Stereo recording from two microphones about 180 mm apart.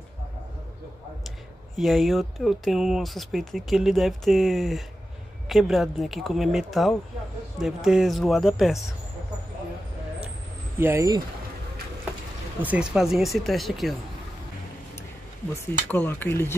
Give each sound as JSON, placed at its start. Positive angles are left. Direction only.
{"t": 1.8, "sound": "speech", "side_deg": 0}
{"t": 10.8, "sound": "speech", "side_deg": -15}
{"t": 12.6, "sound": "speech", "side_deg": -5}
{"t": 15.6, "sound": "speech", "side_deg": 10}